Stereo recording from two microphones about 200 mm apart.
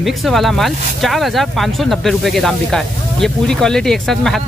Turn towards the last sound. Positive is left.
turn(degrees=0)  # may be behind; listen again after turning